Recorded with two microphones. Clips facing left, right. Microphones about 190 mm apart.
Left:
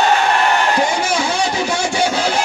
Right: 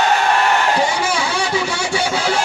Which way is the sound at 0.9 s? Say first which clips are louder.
Left 2 dB; 45° left (ahead or behind).